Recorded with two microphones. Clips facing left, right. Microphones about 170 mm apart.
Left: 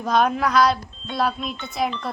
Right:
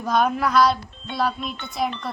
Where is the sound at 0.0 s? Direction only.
Centre (ahead or behind).